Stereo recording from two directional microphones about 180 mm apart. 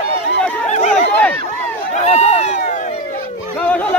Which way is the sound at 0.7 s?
40° left (ahead or behind).